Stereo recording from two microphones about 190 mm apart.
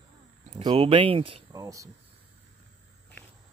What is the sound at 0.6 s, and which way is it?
Speech, 25° right (ahead or behind).